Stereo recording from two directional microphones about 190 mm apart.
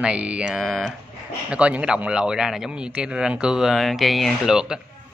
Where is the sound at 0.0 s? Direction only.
5° right (ahead or behind).